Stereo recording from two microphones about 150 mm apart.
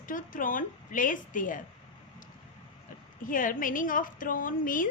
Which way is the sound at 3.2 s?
65° left (ahead or behind).